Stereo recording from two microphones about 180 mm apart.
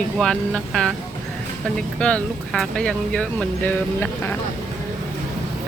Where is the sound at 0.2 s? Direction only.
5° left (ahead or behind).